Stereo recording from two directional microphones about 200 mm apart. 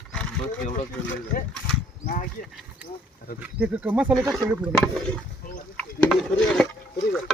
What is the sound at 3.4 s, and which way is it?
Speech, 5° right (ahead or behind).